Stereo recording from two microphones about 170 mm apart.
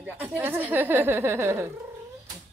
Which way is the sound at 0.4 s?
10° right (ahead or behind).